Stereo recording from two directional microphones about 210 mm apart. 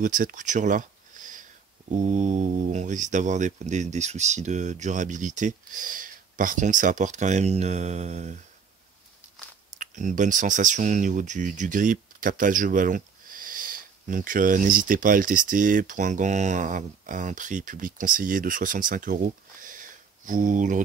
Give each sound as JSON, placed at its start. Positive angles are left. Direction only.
{"t": 0.0, "sound": "speech", "side_deg": -40}
{"t": 9.8, "sound": "speech", "side_deg": -35}